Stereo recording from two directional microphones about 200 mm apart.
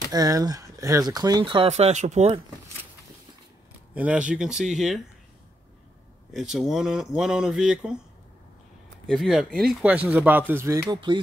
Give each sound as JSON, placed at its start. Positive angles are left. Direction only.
{"t": 0.1, "sound": "speech", "side_deg": -20}
{"t": 3.9, "sound": "speech", "side_deg": -5}
{"t": 6.3, "sound": "speech", "side_deg": 0}
{"t": 9.0, "sound": "speech", "side_deg": 0}